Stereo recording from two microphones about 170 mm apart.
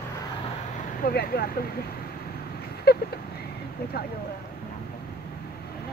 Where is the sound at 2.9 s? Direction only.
65° left (ahead or behind).